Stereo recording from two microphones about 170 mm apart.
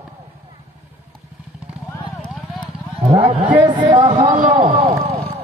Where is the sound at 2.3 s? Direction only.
Centre (ahead or behind).